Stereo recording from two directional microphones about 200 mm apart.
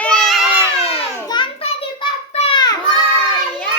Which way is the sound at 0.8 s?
25° left (ahead or behind).